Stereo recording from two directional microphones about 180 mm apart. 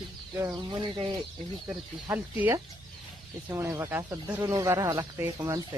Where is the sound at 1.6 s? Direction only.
10° right (ahead or behind).